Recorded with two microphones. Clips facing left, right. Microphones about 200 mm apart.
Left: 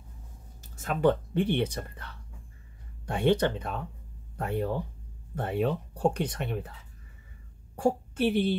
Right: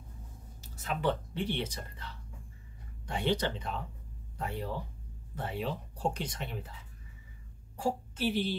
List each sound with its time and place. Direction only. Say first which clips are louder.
0.6 s speech: left 7 dB; 50° left (ahead or behind)
7.7 s a woman's voice: left 7 dB; 60° left (ahead or behind)